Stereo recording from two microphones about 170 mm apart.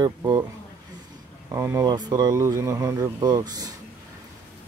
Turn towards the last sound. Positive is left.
turn(degrees=-25)  # may be behind; listen again after turning